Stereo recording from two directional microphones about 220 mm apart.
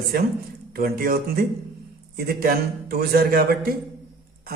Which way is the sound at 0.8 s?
40° right (ahead or behind).